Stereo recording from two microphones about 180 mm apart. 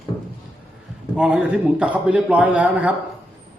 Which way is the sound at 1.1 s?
5° right (ahead or behind).